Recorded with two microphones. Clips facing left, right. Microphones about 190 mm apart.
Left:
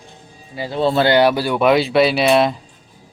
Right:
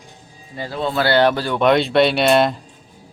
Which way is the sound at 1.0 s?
10° left (ahead or behind).